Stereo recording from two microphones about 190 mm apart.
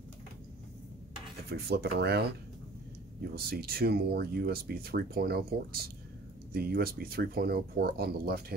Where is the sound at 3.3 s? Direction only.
55° right (ahead or behind).